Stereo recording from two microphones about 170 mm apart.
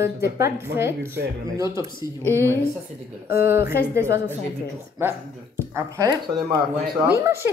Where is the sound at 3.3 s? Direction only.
15° right (ahead or behind).